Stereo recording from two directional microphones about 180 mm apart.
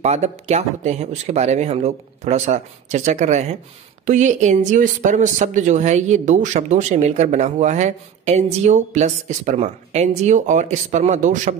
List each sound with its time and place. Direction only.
0.0 s speech: 35° right (ahead or behind)